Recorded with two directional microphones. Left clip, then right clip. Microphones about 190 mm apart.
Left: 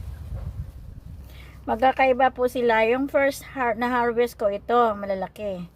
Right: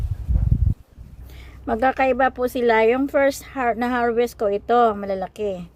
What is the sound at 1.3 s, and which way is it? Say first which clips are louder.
Speech: right 2 dB; 35° right (ahead or behind).